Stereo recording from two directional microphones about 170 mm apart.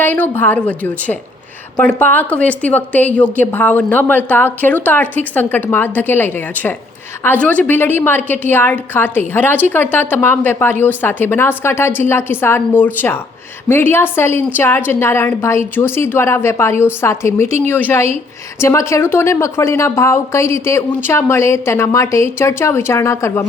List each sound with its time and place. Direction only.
0.0 s a woman's voice: 10° left (ahead or behind)